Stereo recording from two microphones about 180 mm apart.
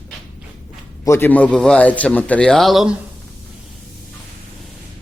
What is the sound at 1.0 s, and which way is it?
A man's voice, 15° left (ahead or behind).